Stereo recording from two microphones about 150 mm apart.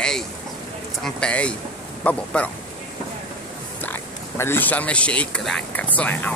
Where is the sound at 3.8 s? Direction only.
15° left (ahead or behind).